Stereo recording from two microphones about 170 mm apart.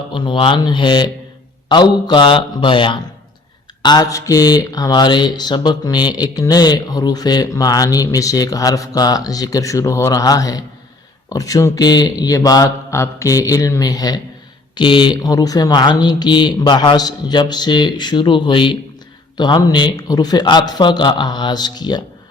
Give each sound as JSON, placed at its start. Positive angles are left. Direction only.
{"t": 0.1, "sound": "speech", "side_deg": 30}